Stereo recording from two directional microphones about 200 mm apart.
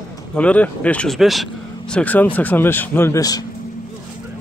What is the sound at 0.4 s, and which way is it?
Speech, 5° left (ahead or behind).